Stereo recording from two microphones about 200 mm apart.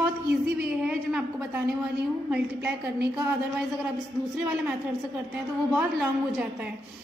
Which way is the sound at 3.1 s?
10° right (ahead or behind).